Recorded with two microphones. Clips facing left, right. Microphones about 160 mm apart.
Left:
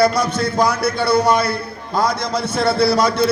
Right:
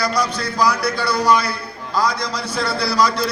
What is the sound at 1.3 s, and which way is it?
A man's voice, 50° left (ahead or behind).